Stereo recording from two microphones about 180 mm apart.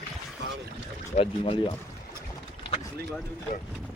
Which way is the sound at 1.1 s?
30° left (ahead or behind).